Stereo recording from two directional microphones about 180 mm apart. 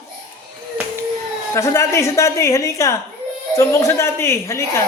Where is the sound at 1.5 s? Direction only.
15° left (ahead or behind).